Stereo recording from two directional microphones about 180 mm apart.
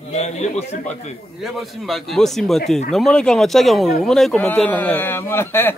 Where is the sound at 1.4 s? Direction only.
Centre (ahead or behind).